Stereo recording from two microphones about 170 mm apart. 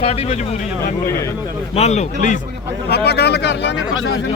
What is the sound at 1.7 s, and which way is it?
Speech, 40° left (ahead or behind).